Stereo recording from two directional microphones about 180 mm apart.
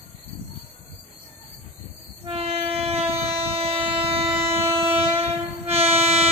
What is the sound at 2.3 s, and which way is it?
Train, 35° right (ahead or behind).